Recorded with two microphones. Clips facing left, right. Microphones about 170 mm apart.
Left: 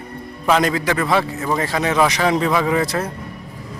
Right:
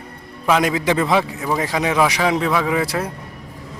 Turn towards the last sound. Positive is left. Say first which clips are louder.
# left 1 dB
turn(degrees=-10)  # may be behind; listen again after turning